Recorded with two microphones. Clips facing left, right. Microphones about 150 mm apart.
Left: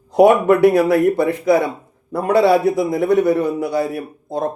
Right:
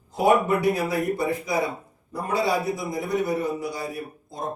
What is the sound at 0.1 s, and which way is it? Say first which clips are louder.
A man's voice: left 9 dB; 70° left (ahead or behind).